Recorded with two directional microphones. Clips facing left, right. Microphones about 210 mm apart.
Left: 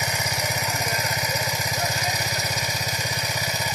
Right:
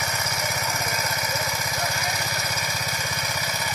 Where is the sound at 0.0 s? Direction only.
15° left (ahead or behind).